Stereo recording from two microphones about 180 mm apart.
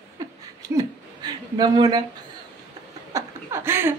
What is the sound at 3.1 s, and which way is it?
Speech, 15° right (ahead or behind).